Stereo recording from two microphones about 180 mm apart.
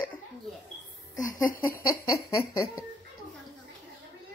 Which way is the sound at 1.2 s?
50° left (ahead or behind).